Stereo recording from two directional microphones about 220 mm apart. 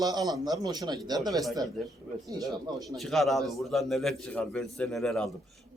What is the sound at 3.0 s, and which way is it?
Speech, centre (ahead or behind).